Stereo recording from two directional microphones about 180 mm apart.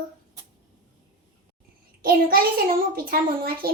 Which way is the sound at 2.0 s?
55° right (ahead or behind).